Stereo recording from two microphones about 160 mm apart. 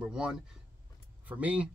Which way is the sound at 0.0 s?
5° right (ahead or behind).